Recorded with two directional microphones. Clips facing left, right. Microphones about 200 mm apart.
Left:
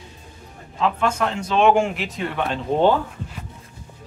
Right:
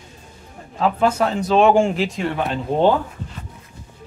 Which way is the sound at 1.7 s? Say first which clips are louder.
Right 2 dB; 30° right (ahead or behind).